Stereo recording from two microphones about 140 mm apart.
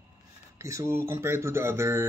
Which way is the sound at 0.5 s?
20° right (ahead or behind).